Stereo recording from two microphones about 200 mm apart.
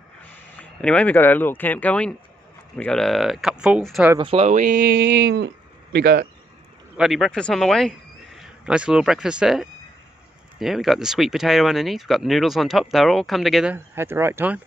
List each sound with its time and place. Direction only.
0.6 s speech: 5° left (ahead or behind)
4.2 s speech: 30° right (ahead or behind)
4.9 s a sound: 60° right (ahead or behind)
5.9 s speech: 55° right (ahead or behind)
7.0 s speech: centre (ahead or behind)
13.7 s speech: 10° right (ahead or behind)